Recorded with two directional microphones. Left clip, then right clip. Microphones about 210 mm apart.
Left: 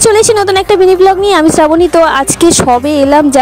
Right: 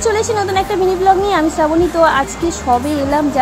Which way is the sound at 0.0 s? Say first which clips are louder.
Left 8 dB; 50° left (ahead or behind).